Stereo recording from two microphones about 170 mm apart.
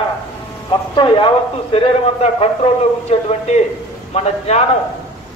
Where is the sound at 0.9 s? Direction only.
30° left (ahead or behind).